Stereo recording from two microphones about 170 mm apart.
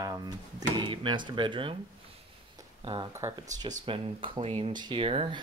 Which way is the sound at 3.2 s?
20° right (ahead or behind).